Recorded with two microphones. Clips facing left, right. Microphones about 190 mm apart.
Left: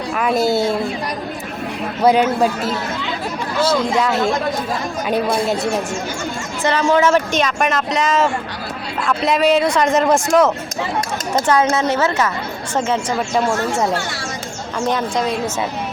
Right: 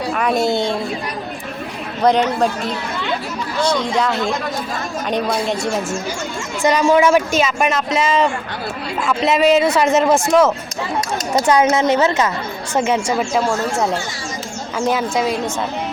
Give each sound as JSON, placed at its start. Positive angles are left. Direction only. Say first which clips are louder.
{"t": 0.1, "sound": "speech", "louder": "left 1 dB", "side_deg": 0}
{"t": 2.0, "sound": "speech", "louder": "left 1 dB", "side_deg": 5}
{"t": 6.7, "sound": "speech", "louder": "right 2 dB", "side_deg": -15}
{"t": 11.3, "sound": "a woman's voice", "louder": "right 2 dB", "side_deg": -15}